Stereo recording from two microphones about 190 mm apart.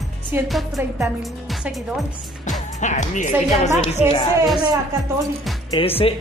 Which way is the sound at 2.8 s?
40° left (ahead or behind).